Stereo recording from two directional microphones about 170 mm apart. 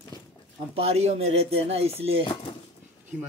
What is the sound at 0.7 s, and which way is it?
Speech, 35° right (ahead or behind).